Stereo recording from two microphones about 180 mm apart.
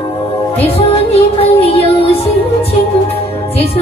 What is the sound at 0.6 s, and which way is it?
Music, 35° left (ahead or behind).